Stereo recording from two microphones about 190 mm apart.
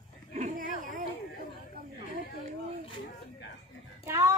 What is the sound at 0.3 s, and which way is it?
Dog, 40° right (ahead or behind).